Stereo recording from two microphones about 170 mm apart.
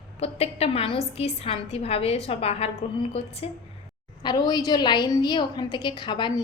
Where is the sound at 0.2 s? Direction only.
35° left (ahead or behind).